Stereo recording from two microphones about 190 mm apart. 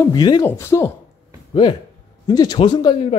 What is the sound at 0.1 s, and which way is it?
Speech, 20° left (ahead or behind).